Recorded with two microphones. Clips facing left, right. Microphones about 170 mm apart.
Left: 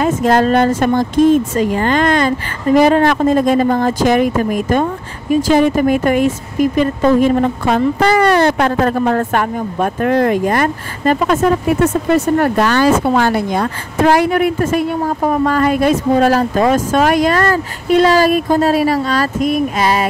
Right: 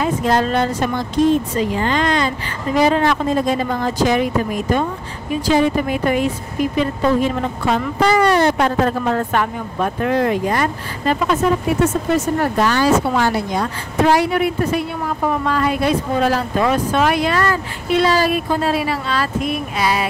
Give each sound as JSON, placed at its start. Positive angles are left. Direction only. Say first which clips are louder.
{"t": 0.0, "sound": "speech", "louder": "left 5 dB", "side_deg": 50}
{"t": 12.1, "sound": "speech", "louder": "left 5 dB", "side_deg": 65}